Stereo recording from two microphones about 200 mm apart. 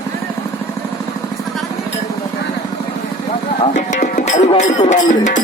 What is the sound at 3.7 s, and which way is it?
Speech, 40° left (ahead or behind).